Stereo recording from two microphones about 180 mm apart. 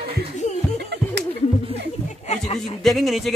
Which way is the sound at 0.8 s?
70° right (ahead or behind).